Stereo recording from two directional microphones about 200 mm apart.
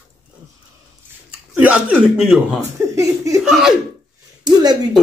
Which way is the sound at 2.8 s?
15° right (ahead or behind).